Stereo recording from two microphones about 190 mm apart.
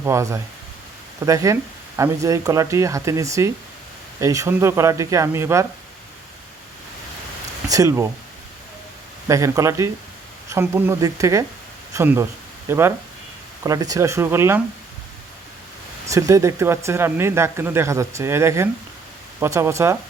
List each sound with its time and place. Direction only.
0.0 s speech: 15° right (ahead or behind)
7.7 s speech: 15° right (ahead or behind)
9.2 s speech: 15° right (ahead or behind)
16.0 s speech: 15° right (ahead or behind)